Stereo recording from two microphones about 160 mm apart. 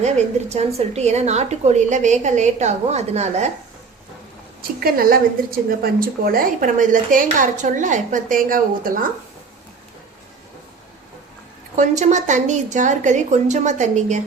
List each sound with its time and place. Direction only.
0.0 s a woman's voice: 45° right (ahead or behind)
4.8 s a woman's voice: 65° right (ahead or behind)
11.8 s a woman's voice: 50° right (ahead or behind)